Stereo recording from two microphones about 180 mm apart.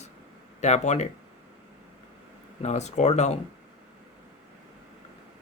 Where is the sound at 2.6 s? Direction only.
40° left (ahead or behind).